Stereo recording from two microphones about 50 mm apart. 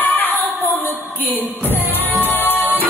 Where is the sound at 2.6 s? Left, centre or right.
Right.